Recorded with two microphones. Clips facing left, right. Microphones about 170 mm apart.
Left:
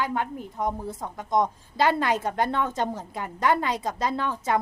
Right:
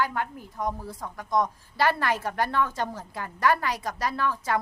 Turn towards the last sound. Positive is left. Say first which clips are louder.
# left 1 dB
turn(degrees=20)  # may be behind; listen again after turning